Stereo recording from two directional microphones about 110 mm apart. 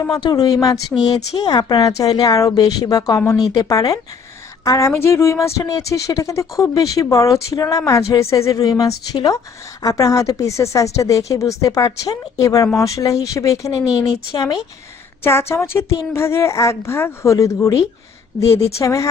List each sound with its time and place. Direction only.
0.2 s a woman's voice: 35° left (ahead or behind)
15.2 s speech: 25° left (ahead or behind)